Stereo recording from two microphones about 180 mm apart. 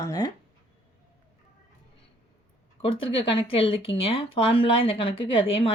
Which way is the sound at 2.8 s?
30° left (ahead or behind).